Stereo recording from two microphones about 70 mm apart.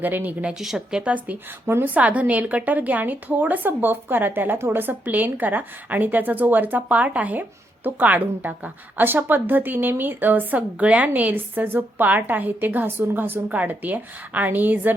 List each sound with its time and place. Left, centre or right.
0.0 s a woman's voice: right
0.5 s a woman's voice: centre; by 14.9 s right